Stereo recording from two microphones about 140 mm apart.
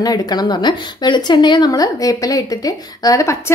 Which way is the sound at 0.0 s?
30° left (ahead or behind).